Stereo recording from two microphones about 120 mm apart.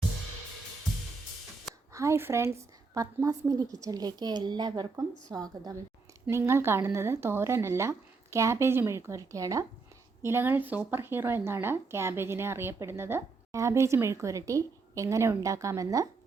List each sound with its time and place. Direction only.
1.9 s a woman's voice: 25° right (ahead or behind)
6.3 s speech: 20° right (ahead or behind)